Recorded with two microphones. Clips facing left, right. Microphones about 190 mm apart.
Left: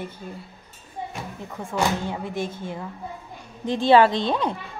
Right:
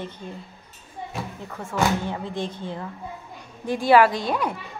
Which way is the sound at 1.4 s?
15° left (ahead or behind).